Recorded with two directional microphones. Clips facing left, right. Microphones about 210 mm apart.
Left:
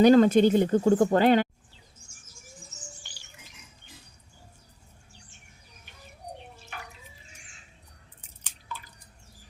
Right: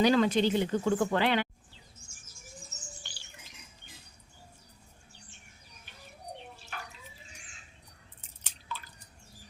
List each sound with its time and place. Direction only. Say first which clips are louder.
0.0 s speech: left 7 dB; 45° left (ahead or behind)